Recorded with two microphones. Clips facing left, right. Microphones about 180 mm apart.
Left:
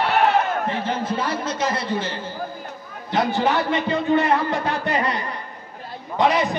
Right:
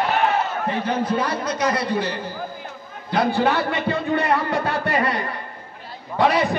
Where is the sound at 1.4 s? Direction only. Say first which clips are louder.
Right 2 dB; 25° left (ahead or behind).